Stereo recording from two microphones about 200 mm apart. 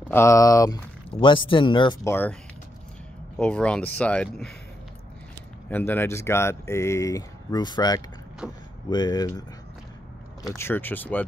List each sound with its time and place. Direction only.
0.1 s speech: 15° left (ahead or behind)
2.0 s speech: 10° left (ahead or behind)
3.3 s speech: 5° left (ahead or behind)
5.7 s speech: 10° left (ahead or behind)
8.4 s speech: 5° right (ahead or behind)
8.9 s speech: 20° left (ahead or behind)
10.5 s speech: 10° left (ahead or behind)